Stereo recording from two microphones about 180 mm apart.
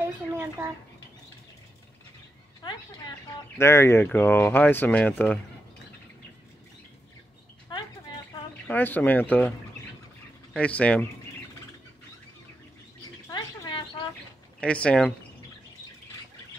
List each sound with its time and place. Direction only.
0.0 s speech: 15° right (ahead or behind)
3.3 s speech: 15° left (ahead or behind)
7.7 s a sound: 25° left (ahead or behind)
8.6 s speech: 10° left (ahead or behind)
10.5 s speech: 5° left (ahead or behind)
13.3 s a sound: 25° left (ahead or behind)
14.6 s speech: 5° left (ahead or behind)